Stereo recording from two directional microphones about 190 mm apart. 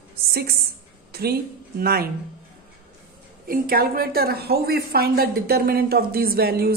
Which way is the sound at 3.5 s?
50° right (ahead or behind).